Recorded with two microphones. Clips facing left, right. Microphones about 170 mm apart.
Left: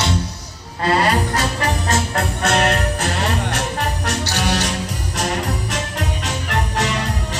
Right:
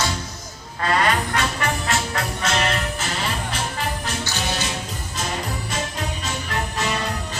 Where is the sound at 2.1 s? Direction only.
60° left (ahead or behind).